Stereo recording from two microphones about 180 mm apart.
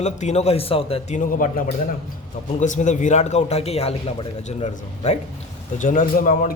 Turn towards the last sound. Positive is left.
turn(degrees=50)  # may be behind; listen again after turning